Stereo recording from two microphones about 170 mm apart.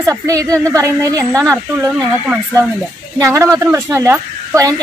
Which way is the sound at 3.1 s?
15° right (ahead or behind).